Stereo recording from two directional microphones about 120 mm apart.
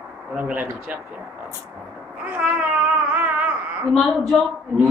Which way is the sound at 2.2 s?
15° right (ahead or behind).